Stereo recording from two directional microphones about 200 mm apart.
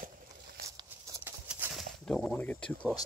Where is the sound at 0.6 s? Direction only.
15° right (ahead or behind).